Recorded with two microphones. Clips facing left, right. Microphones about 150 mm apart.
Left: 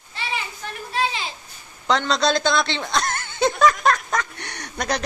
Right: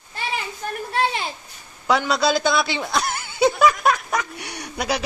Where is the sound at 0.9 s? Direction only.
60° right (ahead or behind).